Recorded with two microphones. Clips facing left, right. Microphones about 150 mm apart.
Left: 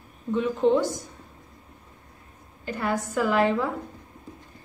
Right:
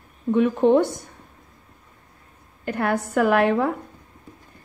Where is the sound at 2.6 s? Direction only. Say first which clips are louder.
Right 4 dB; 60° right (ahead or behind).